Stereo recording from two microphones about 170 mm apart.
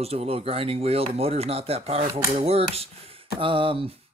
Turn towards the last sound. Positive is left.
turn(degrees=-30)  # may be behind; listen again after turning